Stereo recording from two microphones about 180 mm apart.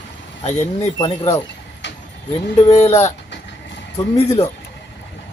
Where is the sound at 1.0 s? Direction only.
15° left (ahead or behind).